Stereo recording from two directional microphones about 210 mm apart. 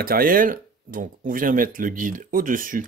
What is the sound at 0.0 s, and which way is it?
Speech, 45° right (ahead or behind).